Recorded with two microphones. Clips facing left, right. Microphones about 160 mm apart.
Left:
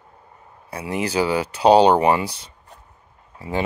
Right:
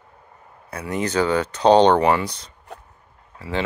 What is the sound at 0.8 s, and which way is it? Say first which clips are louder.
Speech: even; 10° left (ahead or behind).